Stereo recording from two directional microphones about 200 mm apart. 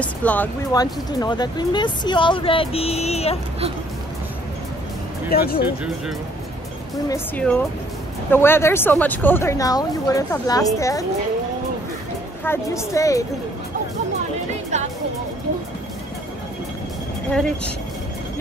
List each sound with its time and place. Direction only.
0.0 s speech: 5° left (ahead or behind)
0.7 s speech: 20° left (ahead or behind)
5.3 s speech: 50° left (ahead or behind)
7.1 s speech: 5° left (ahead or behind)
12.4 s speech: 15° left (ahead or behind)
17.3 s speech: 5° left (ahead or behind)